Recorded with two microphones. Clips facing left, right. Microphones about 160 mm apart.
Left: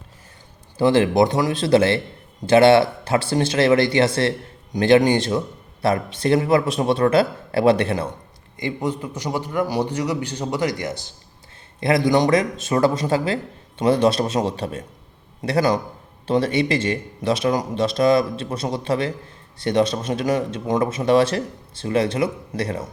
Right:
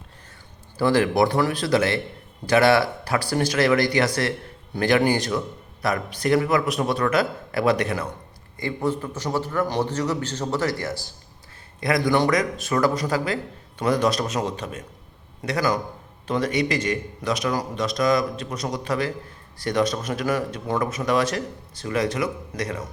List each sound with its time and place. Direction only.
0.8 s speech: 25° left (ahead or behind)
8.5 s a man's voice: 15° left (ahead or behind)